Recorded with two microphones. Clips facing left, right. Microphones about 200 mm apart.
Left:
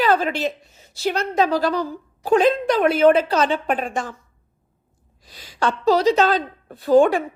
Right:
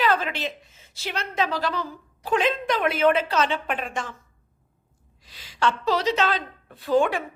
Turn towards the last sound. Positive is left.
turn(degrees=40)  # may be behind; listen again after turning